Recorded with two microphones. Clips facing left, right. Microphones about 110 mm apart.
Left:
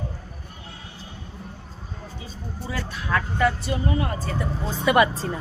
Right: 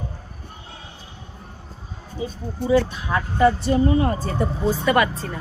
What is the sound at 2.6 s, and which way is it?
Speech, 20° right (ahead or behind).